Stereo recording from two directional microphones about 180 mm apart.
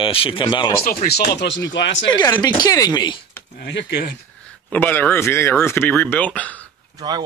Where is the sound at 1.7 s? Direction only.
85° left.